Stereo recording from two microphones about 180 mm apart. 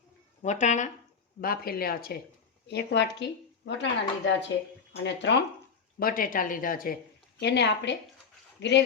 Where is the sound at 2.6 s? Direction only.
70° left (ahead or behind).